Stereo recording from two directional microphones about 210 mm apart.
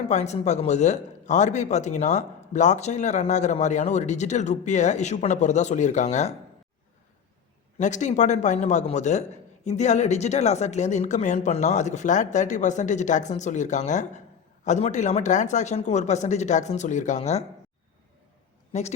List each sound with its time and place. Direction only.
0.1 s speech: 35° left (ahead or behind)
7.8 s speech: 35° left (ahead or behind)
18.7 s speech: 30° left (ahead or behind)